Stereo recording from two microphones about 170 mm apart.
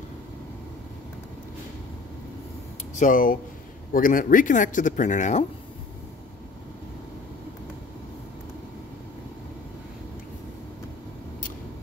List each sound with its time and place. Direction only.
3.0 s speech: 50° left (ahead or behind)